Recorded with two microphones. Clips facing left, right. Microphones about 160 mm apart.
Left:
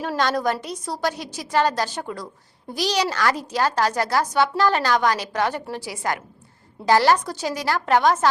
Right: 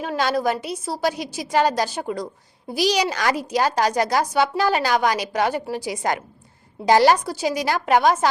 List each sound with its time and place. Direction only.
0.0 s a woman's voice: 5° right (ahead or behind)